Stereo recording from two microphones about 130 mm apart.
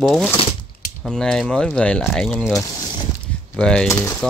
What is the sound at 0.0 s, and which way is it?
Speech, centre (ahead or behind).